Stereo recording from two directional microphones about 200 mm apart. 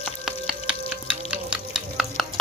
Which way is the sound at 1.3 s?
5° right (ahead or behind).